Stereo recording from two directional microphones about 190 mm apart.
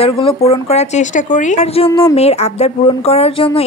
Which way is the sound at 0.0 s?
30° left (ahead or behind).